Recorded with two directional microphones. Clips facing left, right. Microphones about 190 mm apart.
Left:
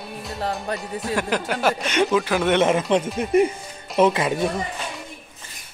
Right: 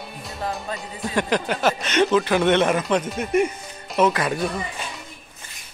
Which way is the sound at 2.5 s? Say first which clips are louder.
Left 1 dB; 20° left (ahead or behind).